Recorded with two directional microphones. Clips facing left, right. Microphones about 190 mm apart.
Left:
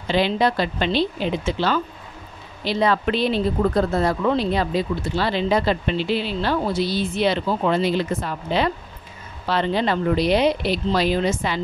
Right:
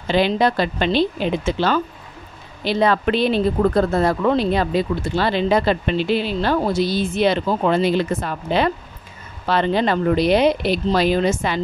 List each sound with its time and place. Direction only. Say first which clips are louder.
0.1 s speech: right 2 dB; 50° right (ahead or behind)